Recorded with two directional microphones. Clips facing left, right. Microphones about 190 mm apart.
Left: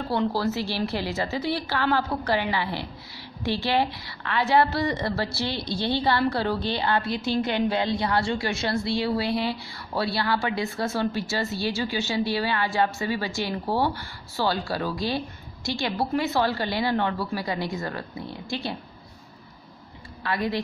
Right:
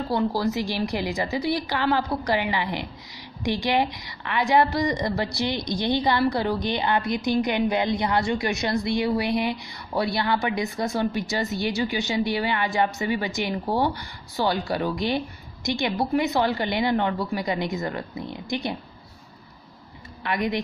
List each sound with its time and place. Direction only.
0.3 s a woman's voice: 15° right (ahead or behind)
20.2 s a woman's voice: 15° right (ahead or behind)